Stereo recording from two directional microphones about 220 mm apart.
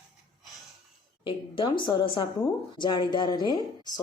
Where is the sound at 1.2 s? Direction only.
20° left (ahead or behind).